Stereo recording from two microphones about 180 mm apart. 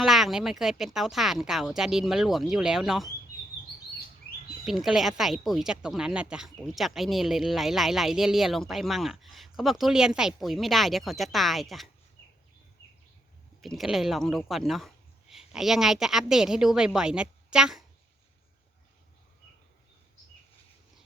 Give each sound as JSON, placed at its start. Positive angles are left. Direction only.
{"t": 0.0, "sound": "speech", "side_deg": 0}
{"t": 4.6, "sound": "speech", "side_deg": 0}
{"t": 13.6, "sound": "speech", "side_deg": 0}